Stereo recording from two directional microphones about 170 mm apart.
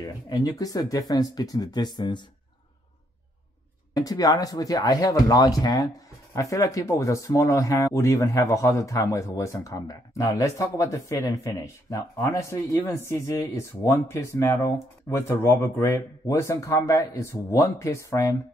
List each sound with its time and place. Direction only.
0.3 s speech: 20° left (ahead or behind)
3.9 s speech: 20° left (ahead or behind)